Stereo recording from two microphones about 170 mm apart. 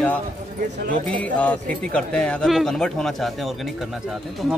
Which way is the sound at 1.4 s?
10° left (ahead or behind).